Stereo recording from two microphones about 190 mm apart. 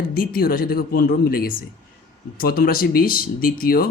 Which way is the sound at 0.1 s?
50° left (ahead or behind).